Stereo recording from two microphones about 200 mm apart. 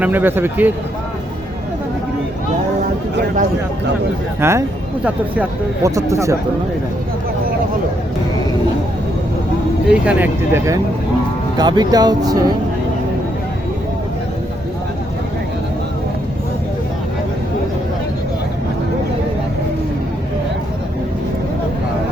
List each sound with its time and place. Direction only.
0.0 s speech: 10° right (ahead or behind)
4.4 s speech: 15° right (ahead or behind)
9.9 s speech: 5° right (ahead or behind)